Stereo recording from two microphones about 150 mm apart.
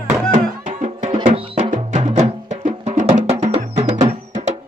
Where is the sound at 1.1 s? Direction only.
35° right (ahead or behind).